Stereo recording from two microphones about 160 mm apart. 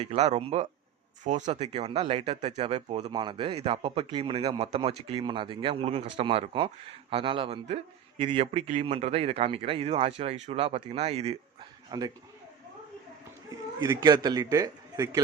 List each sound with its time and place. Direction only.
0.0 s speech: 40° right (ahead or behind)
1.2 s speech: 50° right (ahead or behind)
3.1 s speech: 30° right (ahead or behind)
11.9 s a man's voice: 25° right (ahead or behind)
14.0 s a man's voice: 25° right (ahead or behind)